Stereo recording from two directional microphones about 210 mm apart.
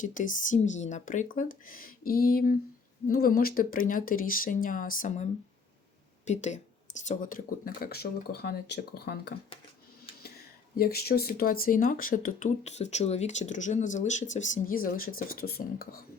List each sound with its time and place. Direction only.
0.0 s speech: 40° left (ahead or behind)